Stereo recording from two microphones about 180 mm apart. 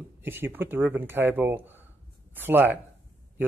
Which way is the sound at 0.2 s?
10° right (ahead or behind).